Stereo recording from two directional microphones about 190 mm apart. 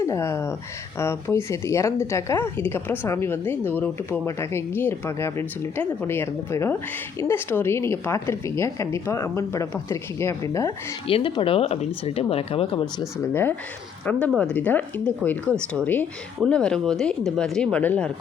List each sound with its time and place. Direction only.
0.0 s speech: 15° left (ahead or behind)
11.0 s speech: 25° left (ahead or behind)
14.0 s a woman's voice: 5° left (ahead or behind)